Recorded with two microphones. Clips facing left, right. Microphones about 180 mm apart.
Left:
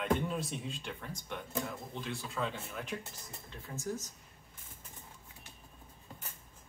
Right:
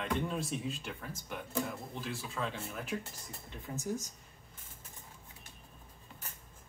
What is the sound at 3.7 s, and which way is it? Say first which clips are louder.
Speech: right 3 dB; 15° right (ahead or behind).